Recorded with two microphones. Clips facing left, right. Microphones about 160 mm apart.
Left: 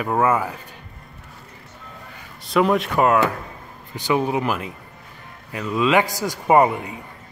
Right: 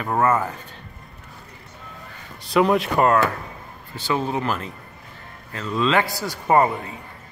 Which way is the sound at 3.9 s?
15° left (ahead or behind).